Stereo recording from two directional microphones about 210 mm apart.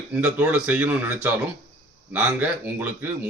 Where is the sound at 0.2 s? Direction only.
5° right (ahead or behind).